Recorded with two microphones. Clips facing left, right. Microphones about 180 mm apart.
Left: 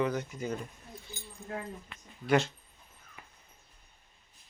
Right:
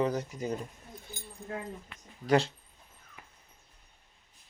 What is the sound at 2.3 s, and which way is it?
Speech, 30° right (ahead or behind).